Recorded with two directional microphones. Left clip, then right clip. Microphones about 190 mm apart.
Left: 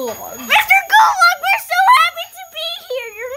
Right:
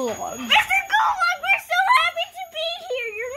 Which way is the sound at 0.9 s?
55° left (ahead or behind).